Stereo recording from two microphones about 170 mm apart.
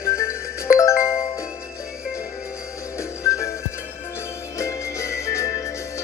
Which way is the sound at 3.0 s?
15° left (ahead or behind).